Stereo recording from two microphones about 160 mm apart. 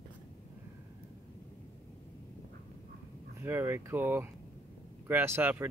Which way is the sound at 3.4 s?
15° right (ahead or behind).